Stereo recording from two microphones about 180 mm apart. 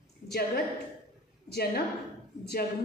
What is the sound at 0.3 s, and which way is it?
A woman's voice, 60° left (ahead or behind).